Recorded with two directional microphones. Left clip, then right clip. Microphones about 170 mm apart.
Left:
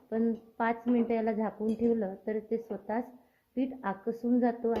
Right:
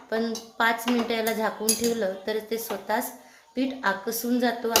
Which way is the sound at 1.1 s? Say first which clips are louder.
Right 4 dB; 40° left (ahead or behind).